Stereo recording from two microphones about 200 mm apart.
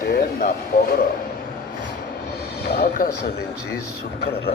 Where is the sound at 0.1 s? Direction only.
45° left (ahead or behind).